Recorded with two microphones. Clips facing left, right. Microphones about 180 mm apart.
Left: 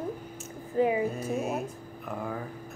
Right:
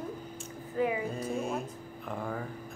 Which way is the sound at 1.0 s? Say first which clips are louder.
Left 3 dB; 5° left (ahead or behind).